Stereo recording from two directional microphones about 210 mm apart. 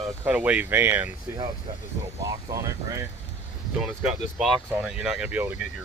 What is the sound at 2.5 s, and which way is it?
Speech, 15° right (ahead or behind).